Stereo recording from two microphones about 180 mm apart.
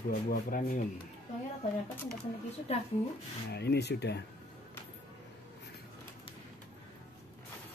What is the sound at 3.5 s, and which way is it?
Speech, 65° left (ahead or behind).